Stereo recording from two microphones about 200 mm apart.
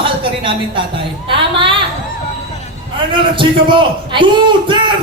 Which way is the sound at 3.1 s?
25° right (ahead or behind).